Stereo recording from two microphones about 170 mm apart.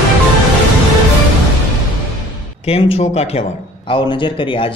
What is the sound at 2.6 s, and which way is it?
Speech, 35° left (ahead or behind).